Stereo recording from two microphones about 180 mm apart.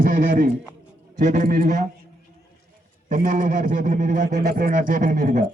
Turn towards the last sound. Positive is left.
turn(degrees=-50)  # may be behind; listen again after turning